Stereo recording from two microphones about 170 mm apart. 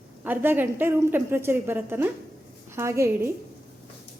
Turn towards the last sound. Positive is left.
turn(degrees=-15)  # may be behind; listen again after turning